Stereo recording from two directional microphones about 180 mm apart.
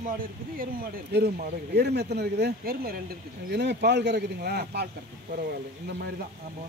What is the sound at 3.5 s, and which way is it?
Speech, 70° right (ahead or behind).